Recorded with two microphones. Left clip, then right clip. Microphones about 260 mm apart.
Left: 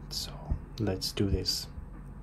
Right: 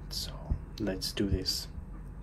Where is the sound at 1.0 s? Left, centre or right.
Left.